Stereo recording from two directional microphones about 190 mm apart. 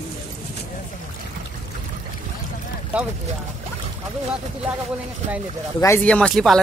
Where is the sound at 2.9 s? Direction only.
5° right (ahead or behind).